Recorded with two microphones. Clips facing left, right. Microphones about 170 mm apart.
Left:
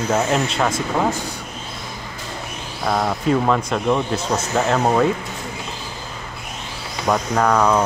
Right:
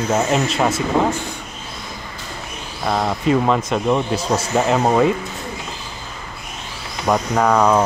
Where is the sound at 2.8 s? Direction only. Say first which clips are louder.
Right 1 dB; 5° right (ahead or behind).